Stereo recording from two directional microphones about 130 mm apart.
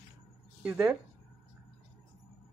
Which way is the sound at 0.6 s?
15° right (ahead or behind).